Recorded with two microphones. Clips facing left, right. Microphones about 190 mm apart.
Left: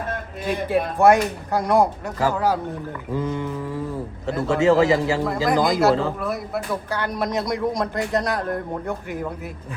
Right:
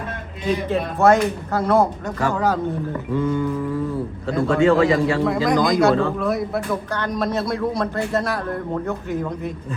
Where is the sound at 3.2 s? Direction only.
25° left (ahead or behind).